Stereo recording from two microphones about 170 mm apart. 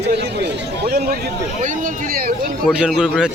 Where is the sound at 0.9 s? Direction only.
65° right (ahead or behind).